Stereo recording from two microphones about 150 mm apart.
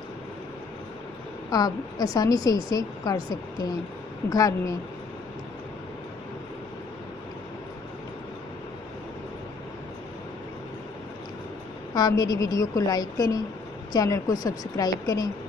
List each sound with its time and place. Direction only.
1.5 s a woman's voice: 25° left (ahead or behind)
11.9 s a woman's voice: 25° left (ahead or behind)